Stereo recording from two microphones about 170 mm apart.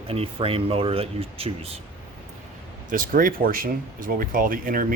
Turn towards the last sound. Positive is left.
turn(degrees=-55)  # may be behind; listen again after turning